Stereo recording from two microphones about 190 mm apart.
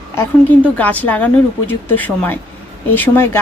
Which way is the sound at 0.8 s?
10° left (ahead or behind).